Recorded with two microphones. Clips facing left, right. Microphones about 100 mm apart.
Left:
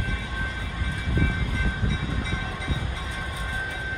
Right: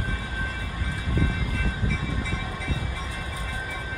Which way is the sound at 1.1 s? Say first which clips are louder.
Even; 20° left (ahead or behind).